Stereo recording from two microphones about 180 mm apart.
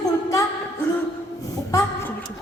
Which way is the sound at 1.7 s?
15° left (ahead or behind).